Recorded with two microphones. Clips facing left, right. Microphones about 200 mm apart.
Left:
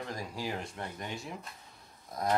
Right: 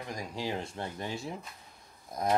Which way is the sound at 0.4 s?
25° right (ahead or behind).